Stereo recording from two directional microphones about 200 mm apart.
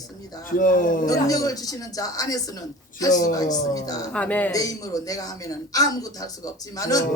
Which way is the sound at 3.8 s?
20° left (ahead or behind).